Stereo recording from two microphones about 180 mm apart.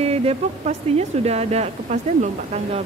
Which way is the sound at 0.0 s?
35° right (ahead or behind).